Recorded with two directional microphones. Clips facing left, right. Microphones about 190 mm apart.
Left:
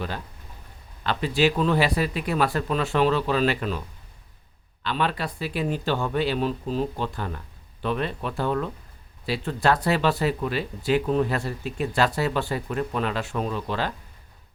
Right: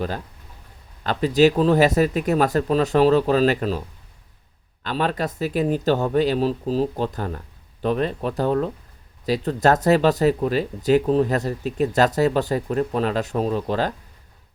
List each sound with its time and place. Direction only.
1.0 s speech: 40° right (ahead or behind)